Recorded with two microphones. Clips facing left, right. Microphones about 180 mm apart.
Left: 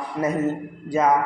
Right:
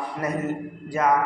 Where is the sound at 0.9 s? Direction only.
20° left (ahead or behind).